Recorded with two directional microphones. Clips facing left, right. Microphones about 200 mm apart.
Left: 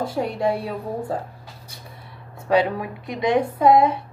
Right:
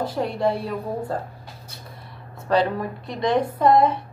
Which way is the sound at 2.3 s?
10° left (ahead or behind).